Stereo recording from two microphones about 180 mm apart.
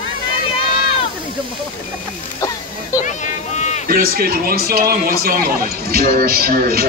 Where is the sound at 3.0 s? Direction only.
40° left (ahead or behind).